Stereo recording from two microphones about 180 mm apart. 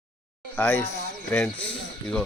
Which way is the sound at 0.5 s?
10° left (ahead or behind).